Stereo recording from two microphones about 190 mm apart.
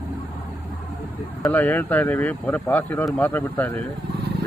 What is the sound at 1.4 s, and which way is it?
Speech, 10° left (ahead or behind).